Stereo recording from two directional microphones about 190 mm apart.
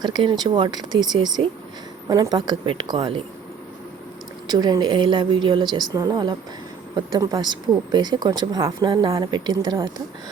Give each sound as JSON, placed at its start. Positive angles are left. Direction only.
{"t": 0.0, "sound": "speech", "side_deg": -25}
{"t": 4.4, "sound": "speech", "side_deg": -20}